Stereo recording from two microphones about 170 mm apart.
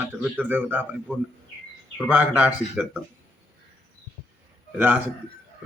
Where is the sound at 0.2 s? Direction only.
10° right (ahead or behind).